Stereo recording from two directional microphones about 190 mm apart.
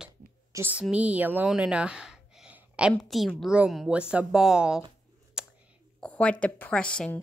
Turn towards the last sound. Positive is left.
turn(degrees=5)  # may be behind; listen again after turning